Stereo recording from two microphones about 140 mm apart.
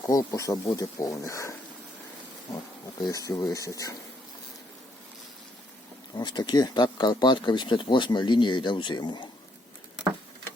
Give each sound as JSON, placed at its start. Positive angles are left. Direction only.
{"t": 0.1, "sound": "speech", "side_deg": 25}
{"t": 3.0, "sound": "speech", "side_deg": 25}
{"t": 6.1, "sound": "speech", "side_deg": 30}